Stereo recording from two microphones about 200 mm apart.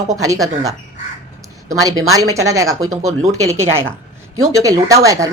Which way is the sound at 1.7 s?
15° right (ahead or behind).